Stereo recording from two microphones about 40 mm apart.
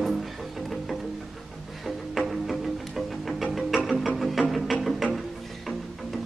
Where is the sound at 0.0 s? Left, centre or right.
Centre.